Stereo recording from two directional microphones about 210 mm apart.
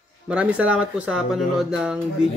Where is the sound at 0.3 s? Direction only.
5° right (ahead or behind).